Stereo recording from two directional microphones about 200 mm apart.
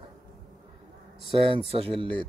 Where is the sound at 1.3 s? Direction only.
30° right (ahead or behind).